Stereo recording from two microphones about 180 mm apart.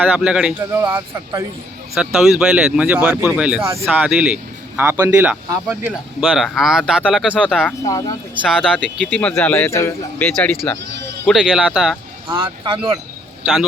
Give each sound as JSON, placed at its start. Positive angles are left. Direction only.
{"t": 0.0, "sound": "speech", "side_deg": -5}
{"t": 0.7, "sound": "speech", "side_deg": -15}
{"t": 2.0, "sound": "speech", "side_deg": -5}
{"t": 7.9, "sound": "speech", "side_deg": 20}
{"t": 8.4, "sound": "speech", "side_deg": -5}
{"t": 12.3, "sound": "speech", "side_deg": -25}